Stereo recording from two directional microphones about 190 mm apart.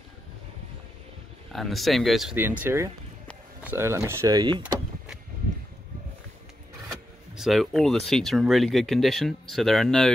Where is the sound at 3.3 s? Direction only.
5° left (ahead or behind).